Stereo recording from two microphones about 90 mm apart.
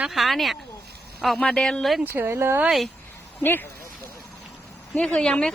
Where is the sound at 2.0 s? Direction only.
25° right (ahead or behind).